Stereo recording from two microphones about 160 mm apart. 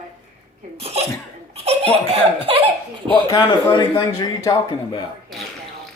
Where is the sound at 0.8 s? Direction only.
40° right (ahead or behind).